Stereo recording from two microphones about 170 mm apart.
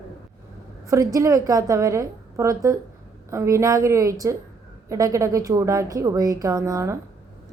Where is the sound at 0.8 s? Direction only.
20° right (ahead or behind).